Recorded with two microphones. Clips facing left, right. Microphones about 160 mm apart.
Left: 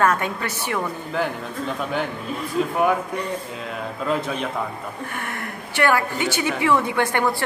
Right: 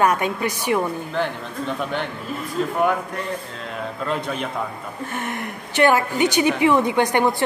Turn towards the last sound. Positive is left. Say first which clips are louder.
# right 3 dB
turn(degrees=-20)  # may be behind; listen again after turning